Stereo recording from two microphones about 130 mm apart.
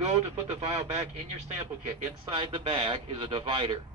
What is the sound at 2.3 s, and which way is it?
Speech, 40° right (ahead or behind).